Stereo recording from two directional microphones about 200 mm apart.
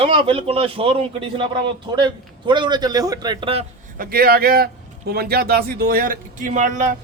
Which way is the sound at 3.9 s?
50° right (ahead or behind).